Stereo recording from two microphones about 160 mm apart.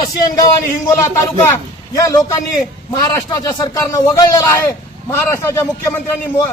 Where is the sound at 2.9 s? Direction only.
25° left (ahead or behind).